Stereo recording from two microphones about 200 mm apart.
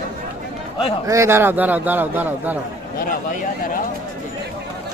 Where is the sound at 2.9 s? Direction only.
45° left (ahead or behind).